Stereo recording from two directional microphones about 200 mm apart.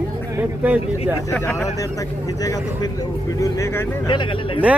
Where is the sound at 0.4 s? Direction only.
10° right (ahead or behind).